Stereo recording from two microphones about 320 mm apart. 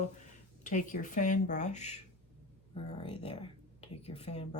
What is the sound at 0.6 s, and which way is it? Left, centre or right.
Speech, left.